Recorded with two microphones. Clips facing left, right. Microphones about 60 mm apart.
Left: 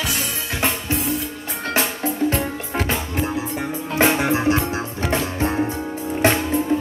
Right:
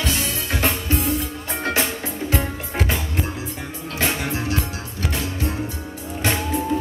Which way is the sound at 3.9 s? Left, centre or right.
Left.